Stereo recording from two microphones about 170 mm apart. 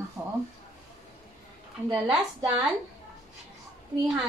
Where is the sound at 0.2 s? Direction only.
15° right (ahead or behind).